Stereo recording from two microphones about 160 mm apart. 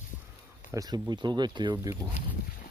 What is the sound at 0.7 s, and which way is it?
Speech, 25° right (ahead or behind).